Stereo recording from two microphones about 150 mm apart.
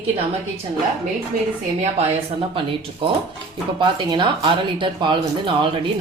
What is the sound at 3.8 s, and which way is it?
Speech, 30° right (ahead or behind).